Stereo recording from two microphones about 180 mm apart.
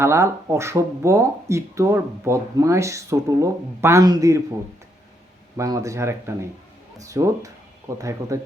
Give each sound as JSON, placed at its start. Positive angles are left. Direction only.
{"t": 0.0, "sound": "speech", "side_deg": -15}
{"t": 5.5, "sound": "speech", "side_deg": -15}